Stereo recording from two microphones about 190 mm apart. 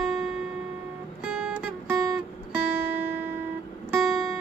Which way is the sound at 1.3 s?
10° right (ahead or behind).